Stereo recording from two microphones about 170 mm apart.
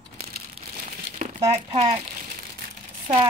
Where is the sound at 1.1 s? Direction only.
45° right (ahead or behind).